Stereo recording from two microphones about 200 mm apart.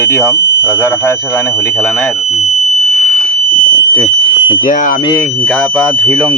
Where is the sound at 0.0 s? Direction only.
15° left (ahead or behind).